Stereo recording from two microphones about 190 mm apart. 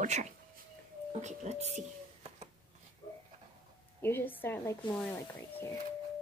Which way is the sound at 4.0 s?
10° left (ahead or behind).